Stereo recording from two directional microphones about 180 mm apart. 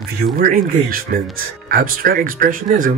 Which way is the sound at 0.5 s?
55° right (ahead or behind).